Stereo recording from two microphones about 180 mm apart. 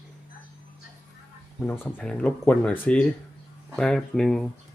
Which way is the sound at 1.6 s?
10° left (ahead or behind).